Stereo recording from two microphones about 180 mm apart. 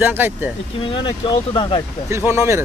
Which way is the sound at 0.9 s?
25° left (ahead or behind).